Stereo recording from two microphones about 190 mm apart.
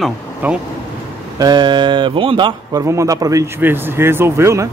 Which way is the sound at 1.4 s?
20° right (ahead or behind).